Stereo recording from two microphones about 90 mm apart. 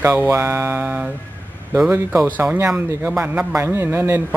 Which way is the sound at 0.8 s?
15° right (ahead or behind).